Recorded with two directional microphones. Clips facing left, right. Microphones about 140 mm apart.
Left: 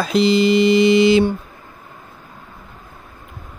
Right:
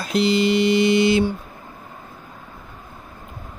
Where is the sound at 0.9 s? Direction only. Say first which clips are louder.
Left 4 dB; 90° left.